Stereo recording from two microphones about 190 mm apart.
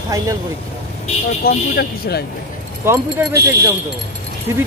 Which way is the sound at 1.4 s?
60° left (ahead or behind).